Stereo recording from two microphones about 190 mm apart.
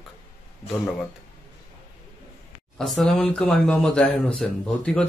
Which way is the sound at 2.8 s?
Centre (ahead or behind).